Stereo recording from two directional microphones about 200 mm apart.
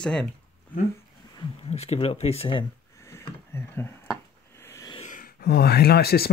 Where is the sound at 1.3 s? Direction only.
30° left (ahead or behind).